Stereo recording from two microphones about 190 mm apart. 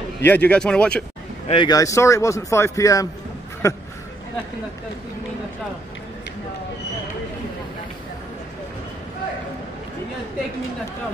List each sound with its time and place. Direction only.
0.2 s speech: 10° left (ahead or behind)
1.5 s speech: 25° left (ahead or behind)